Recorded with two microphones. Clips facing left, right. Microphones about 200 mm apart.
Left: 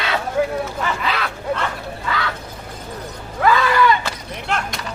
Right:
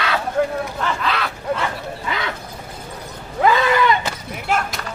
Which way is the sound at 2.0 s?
20° right (ahead or behind).